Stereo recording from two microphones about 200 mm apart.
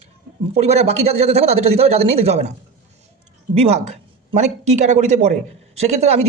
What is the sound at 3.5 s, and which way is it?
Speech, 30° right (ahead or behind).